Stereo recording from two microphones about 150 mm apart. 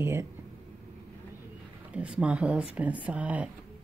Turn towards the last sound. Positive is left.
turn(degrees=-10)  # may be behind; listen again after turning